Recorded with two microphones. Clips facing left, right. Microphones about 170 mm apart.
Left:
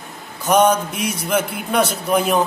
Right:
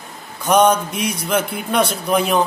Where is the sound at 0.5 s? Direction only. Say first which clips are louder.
Right 1 dB; 5° left (ahead or behind).